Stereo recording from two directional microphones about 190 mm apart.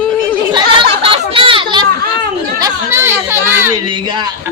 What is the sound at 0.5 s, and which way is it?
Chatter, 25° right (ahead or behind).